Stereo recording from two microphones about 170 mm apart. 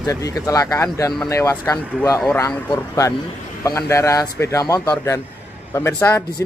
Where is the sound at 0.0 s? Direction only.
20° left (ahead or behind).